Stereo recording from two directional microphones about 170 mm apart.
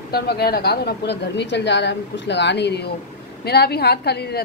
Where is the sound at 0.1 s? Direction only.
70° left (ahead or behind).